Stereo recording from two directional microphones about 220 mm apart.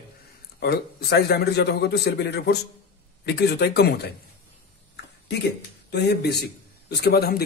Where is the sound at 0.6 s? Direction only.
45° left (ahead or behind).